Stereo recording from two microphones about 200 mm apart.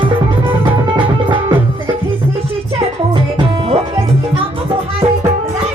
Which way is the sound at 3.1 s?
25° right (ahead or behind).